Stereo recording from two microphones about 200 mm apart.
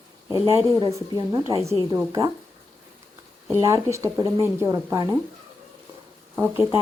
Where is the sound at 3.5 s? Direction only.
15° right (ahead or behind).